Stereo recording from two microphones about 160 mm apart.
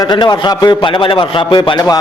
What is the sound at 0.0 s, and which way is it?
A man's voice, 25° left (ahead or behind).